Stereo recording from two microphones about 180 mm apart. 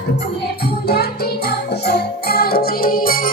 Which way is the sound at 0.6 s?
60° left (ahead or behind).